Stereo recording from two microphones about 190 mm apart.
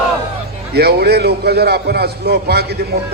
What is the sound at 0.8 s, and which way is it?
A man's voice, 55° right (ahead or behind).